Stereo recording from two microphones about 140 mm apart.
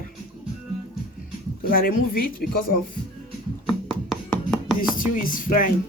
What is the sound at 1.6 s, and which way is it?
A woman's voice, 90° left.